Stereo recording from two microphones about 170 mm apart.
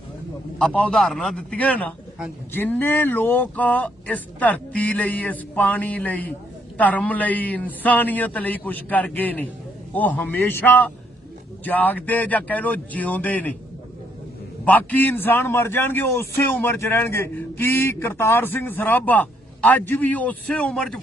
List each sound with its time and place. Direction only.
0.6 s a man's voice: 5° left (ahead or behind)
14.6 s a man's voice: 10° left (ahead or behind)